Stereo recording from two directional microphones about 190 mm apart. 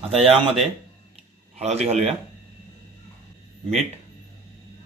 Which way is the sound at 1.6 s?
35° right (ahead or behind).